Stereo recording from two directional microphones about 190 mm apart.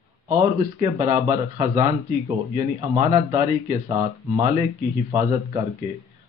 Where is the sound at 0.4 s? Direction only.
25° right (ahead or behind).